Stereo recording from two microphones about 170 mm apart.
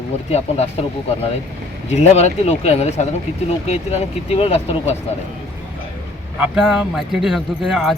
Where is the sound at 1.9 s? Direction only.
40° left (ahead or behind).